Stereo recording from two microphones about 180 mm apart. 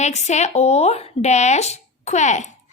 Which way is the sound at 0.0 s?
40° left (ahead or behind).